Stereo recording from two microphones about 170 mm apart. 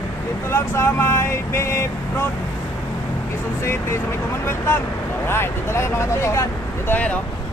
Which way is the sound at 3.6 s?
15° left (ahead or behind).